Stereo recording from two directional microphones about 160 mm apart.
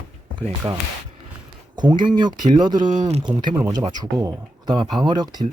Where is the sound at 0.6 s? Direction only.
25° right (ahead or behind).